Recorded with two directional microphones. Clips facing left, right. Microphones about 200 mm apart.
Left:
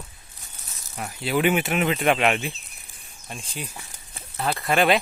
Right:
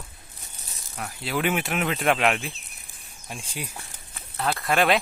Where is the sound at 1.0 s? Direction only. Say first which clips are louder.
Left 4 dB; centre (ahead or behind).